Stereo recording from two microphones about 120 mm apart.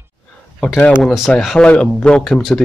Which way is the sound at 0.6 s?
5° left (ahead or behind).